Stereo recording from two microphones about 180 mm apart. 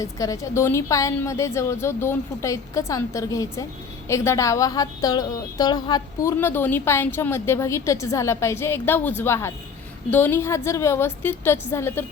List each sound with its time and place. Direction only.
0.0 s a woman's voice: 20° left (ahead or behind)